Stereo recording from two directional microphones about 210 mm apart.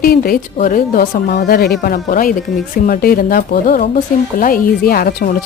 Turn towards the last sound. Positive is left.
turn(degrees=45)  # may be behind; listen again after turning